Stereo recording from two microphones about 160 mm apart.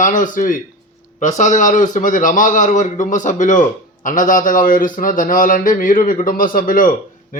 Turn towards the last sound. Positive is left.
turn(degrees=60)  # may be behind; listen again after turning